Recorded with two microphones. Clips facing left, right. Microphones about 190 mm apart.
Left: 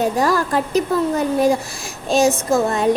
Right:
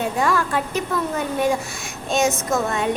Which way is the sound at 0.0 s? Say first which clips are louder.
Left 4 dB; 35° left (ahead or behind).